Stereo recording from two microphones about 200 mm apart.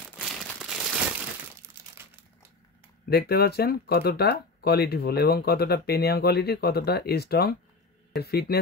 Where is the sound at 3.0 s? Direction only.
50° left (ahead or behind).